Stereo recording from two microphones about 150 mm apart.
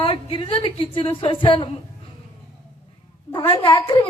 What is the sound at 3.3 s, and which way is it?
Speech, 35° left (ahead or behind).